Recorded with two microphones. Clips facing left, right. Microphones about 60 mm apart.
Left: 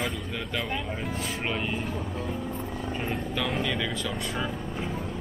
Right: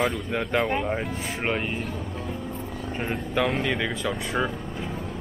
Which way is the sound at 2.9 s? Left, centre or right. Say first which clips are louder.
Right 3 dB; centre.